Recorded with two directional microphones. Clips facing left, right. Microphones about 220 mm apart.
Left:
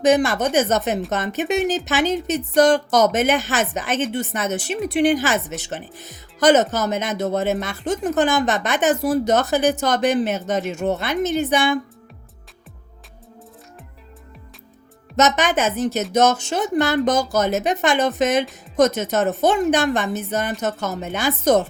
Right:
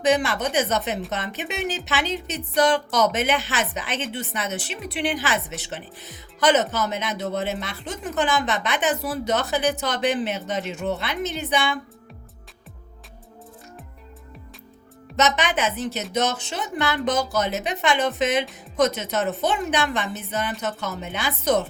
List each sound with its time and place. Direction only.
0.0 s speech: 45° left (ahead or behind)
15.1 s speech: 45° left (ahead or behind)